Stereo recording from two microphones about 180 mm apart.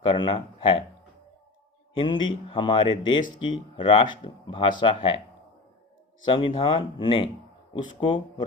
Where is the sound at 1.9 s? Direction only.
25° left (ahead or behind).